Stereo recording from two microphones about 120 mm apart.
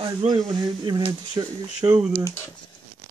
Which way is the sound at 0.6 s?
35° right (ahead or behind).